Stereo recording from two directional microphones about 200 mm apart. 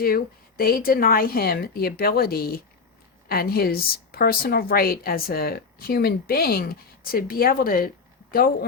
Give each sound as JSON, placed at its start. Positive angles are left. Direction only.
{"t": 0.0, "sound": "a woman's voice", "side_deg": 50}